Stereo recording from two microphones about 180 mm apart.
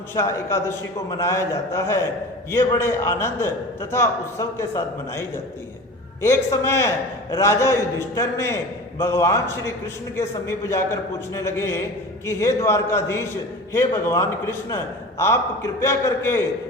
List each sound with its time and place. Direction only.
0.1 s a man's voice: 15° left (ahead or behind)
6.2 s a man's voice: 15° left (ahead or behind)